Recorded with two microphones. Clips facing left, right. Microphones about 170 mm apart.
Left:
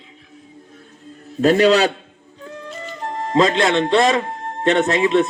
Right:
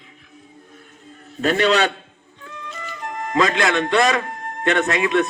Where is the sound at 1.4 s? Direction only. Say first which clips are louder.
Left 4 dB; 35° left (ahead or behind).